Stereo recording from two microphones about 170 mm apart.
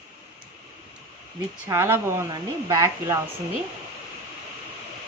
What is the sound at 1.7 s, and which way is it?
A woman's voice, 15° right (ahead or behind).